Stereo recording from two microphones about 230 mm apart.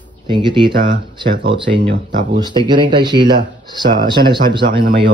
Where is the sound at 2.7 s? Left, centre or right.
Centre.